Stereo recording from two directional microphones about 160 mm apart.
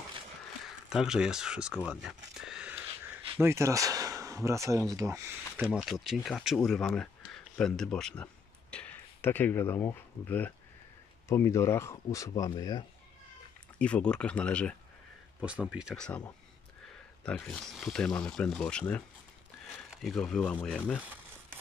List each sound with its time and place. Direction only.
0.8 s speech: 5° right (ahead or behind)
3.3 s speech: 15° right (ahead or behind)
5.7 s speech: centre (ahead or behind); by 12.8 s 25° left (ahead or behind)
13.7 s speech: 5° left (ahead or behind)
15.4 s speech: 5° right (ahead or behind)
16.0 s speech: 5° left (ahead or behind)
20.8 s speech: 10° right (ahead or behind)